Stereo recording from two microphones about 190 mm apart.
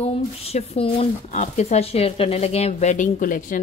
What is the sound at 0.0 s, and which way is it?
Speech, 35° left (ahead or behind).